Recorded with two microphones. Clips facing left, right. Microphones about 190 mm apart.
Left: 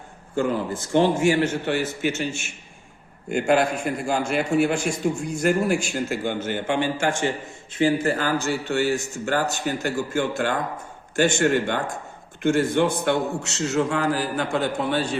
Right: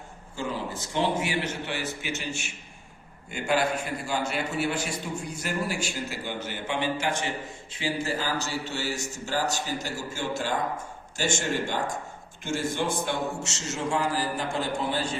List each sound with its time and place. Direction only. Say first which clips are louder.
0.3 s a man's voice: left 8 dB; 50° left (ahead or behind); by 15.1 s 65° left (ahead or behind)